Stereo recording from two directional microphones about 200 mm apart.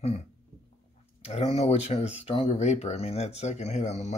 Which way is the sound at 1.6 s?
30° left (ahead or behind).